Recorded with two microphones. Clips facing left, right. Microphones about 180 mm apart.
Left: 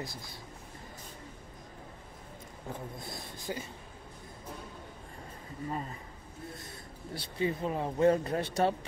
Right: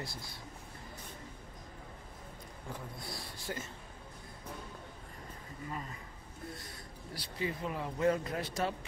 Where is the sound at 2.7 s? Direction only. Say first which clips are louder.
Left 3 dB; 20° left (ahead or behind).